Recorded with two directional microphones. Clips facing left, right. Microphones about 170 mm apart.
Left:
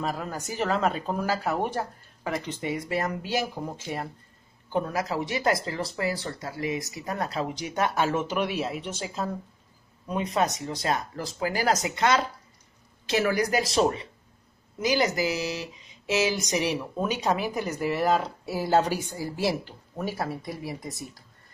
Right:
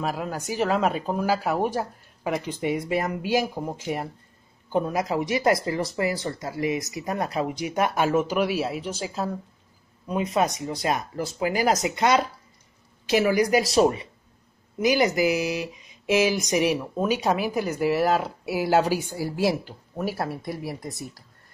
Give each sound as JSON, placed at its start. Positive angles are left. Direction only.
{"t": 0.0, "sound": "speech", "side_deg": -10}
{"t": 10.3, "sound": "speech", "side_deg": -10}